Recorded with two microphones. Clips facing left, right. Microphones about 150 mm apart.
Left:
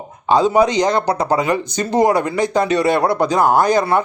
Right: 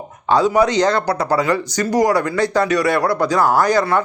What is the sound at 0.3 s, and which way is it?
Speech, 20° left (ahead or behind).